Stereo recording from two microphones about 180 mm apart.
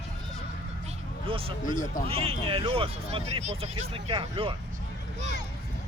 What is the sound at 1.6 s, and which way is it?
Speech, 45° left (ahead or behind).